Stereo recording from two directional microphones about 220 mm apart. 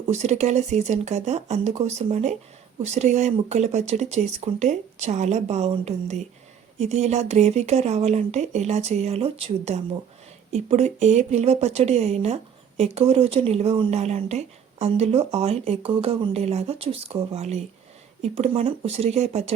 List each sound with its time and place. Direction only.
0.1 s speech: 30° right (ahead or behind)